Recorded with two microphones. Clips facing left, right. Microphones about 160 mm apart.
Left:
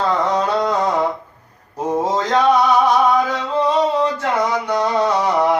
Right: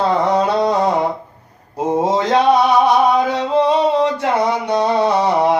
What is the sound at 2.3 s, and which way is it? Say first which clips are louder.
Music: right 1 dB; 20° right (ahead or behind).